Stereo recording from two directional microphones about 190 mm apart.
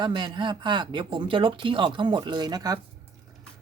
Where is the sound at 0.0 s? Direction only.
25° right (ahead or behind).